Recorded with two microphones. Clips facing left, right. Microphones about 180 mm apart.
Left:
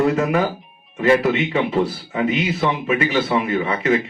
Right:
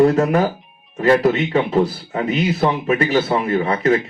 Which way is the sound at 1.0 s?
35° right (ahead or behind).